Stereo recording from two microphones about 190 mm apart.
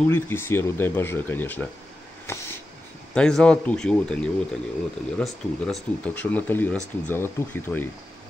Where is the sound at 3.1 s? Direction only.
5° left (ahead or behind).